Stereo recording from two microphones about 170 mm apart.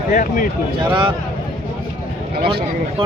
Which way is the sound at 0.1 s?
55° left (ahead or behind).